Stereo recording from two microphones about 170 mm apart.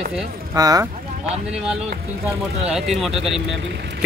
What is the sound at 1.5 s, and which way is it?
A man's voice, 5° right (ahead or behind).